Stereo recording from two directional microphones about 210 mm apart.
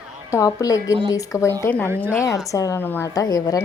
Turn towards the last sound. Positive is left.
turn(degrees=15)  # may be behind; listen again after turning